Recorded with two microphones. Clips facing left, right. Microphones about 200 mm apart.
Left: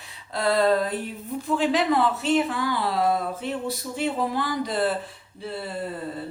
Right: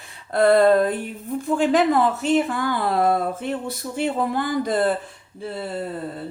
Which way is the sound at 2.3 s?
50° right (ahead or behind).